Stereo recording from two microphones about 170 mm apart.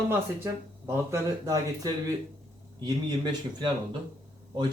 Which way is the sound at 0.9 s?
15° right (ahead or behind).